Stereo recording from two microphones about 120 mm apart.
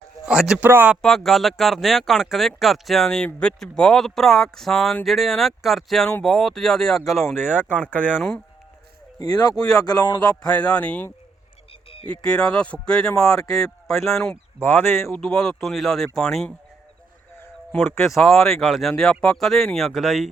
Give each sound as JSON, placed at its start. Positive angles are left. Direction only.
{"t": 0.3, "sound": "speech", "side_deg": -5}
{"t": 0.7, "sound": "speech", "side_deg": -15}
{"t": 1.0, "sound": "speech", "side_deg": 0}
{"t": 9.1, "sound": "speech", "side_deg": 35}
{"t": 10.4, "sound": "speech", "side_deg": 10}
{"t": 11.7, "sound": "a sound", "side_deg": 50}
{"t": 12.2, "sound": "speech", "side_deg": 5}
{"t": 14.6, "sound": "speech", "side_deg": 20}
{"t": 15.2, "sound": "speech", "side_deg": 5}
{"t": 17.7, "sound": "speech", "side_deg": 0}